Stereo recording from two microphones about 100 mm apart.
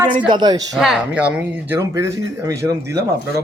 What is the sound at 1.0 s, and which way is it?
Speech, 10° right (ahead or behind).